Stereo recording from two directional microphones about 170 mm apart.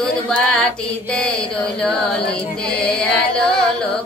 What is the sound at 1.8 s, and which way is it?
Music, 5° left (ahead or behind).